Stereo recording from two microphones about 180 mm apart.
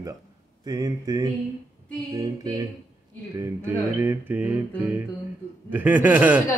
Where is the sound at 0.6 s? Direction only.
20° right (ahead or behind).